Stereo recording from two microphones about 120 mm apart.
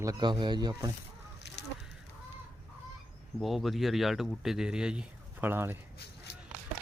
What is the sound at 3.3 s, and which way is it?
A man's voice, centre (ahead or behind).